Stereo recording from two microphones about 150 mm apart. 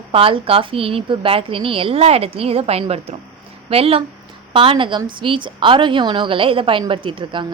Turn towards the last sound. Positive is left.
turn(degrees=-35)  # may be behind; listen again after turning